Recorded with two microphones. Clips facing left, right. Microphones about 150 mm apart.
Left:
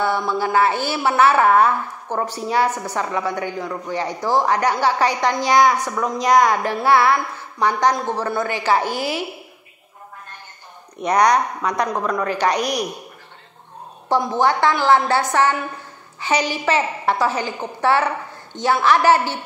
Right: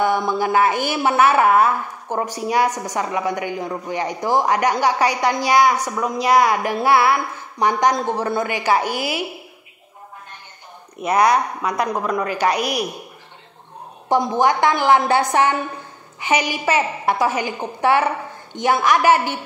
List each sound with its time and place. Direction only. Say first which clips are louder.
0.0 s a woman's voice: right 2 dB; 15° right (ahead or behind)
11.0 s a woman's voice: even; 5° right (ahead or behind)
14.0 s a woman's voice: right 1 dB; 15° right (ahead or behind)